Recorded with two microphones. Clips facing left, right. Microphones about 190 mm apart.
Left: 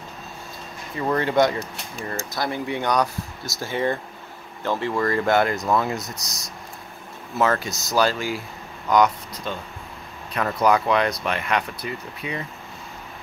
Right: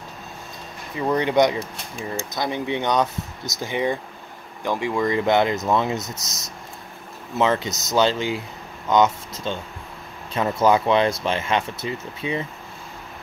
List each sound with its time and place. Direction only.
1.1 s speech: 20° right (ahead or behind)